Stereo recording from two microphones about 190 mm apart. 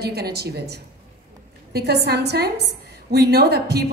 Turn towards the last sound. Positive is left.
turn(degrees=-60)  # may be behind; listen again after turning